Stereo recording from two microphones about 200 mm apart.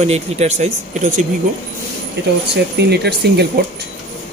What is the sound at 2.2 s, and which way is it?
Speech, 60° right (ahead or behind).